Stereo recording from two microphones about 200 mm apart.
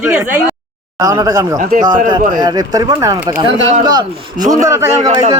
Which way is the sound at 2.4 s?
20° right (ahead or behind).